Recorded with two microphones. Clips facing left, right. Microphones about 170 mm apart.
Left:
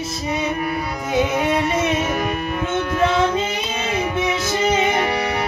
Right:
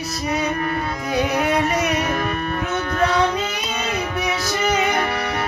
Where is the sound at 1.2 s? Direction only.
25° left (ahead or behind).